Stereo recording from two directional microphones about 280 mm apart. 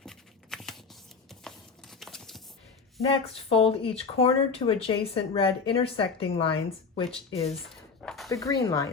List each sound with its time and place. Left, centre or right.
0.0 s shuffling cards: centre
1.5 s a sound: centre
3.1 s speech: left
8.0 s dog: centre
8.3 s speech: centre